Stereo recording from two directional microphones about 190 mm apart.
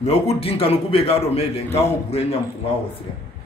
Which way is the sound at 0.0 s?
35° left (ahead or behind).